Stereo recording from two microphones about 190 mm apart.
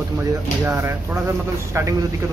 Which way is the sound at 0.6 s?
15° right (ahead or behind).